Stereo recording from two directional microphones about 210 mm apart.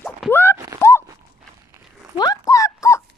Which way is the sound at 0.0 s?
10° left (ahead or behind).